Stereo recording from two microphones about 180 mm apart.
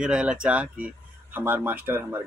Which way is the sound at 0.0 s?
5° right (ahead or behind).